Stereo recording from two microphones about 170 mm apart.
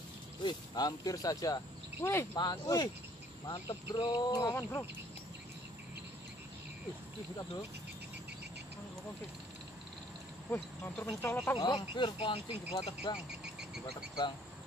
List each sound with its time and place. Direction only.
0.4 s speech: 25° left (ahead or behind)
10.5 s speech: 15° left (ahead or behind)
11.5 s speech: 30° left (ahead or behind)
13.4 s cricket: 5° right (ahead or behind)